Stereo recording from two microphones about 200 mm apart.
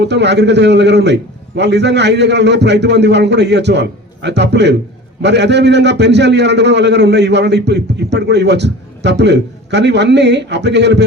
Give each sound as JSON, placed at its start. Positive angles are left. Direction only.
{"t": 0.0, "sound": "a man's voice", "side_deg": -60}